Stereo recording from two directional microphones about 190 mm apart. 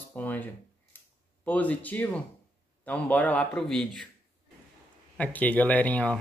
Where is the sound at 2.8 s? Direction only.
10° left (ahead or behind).